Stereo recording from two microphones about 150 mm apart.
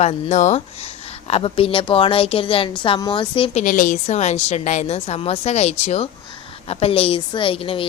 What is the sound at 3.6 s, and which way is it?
A woman's voice, 60° left (ahead or behind).